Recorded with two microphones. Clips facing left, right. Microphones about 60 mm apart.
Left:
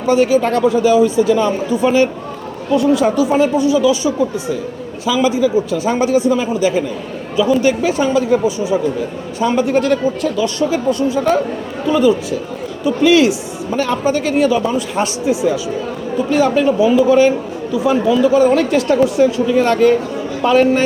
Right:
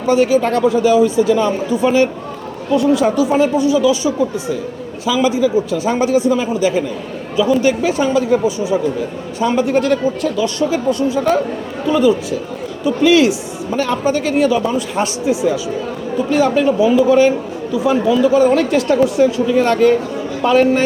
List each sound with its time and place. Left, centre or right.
0.1 s speech: left
16.8 s speech: left